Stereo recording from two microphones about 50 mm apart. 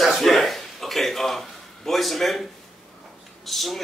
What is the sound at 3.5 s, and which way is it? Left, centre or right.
Speech, centre.